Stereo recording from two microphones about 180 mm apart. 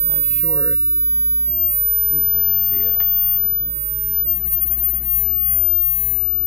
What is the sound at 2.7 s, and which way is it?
Speech, 15° left (ahead or behind).